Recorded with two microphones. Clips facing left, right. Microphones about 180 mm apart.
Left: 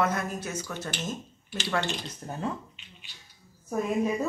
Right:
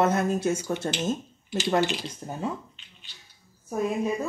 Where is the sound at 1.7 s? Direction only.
15° right (ahead or behind).